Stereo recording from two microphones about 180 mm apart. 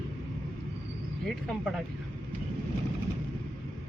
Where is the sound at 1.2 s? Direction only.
Centre (ahead or behind).